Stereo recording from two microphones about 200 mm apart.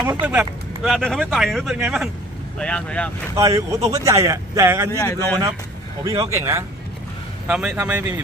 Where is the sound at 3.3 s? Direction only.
15° right (ahead or behind).